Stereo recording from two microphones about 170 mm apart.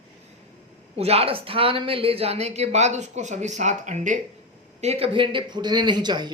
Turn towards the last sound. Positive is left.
turn(degrees=-25)  # may be behind; listen again after turning